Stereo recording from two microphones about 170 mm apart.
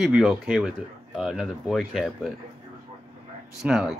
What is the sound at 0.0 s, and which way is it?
Speech, 5° right (ahead or behind).